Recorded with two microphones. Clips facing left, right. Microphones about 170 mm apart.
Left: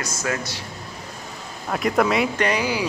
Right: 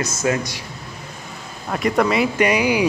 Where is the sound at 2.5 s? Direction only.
15° right (ahead or behind).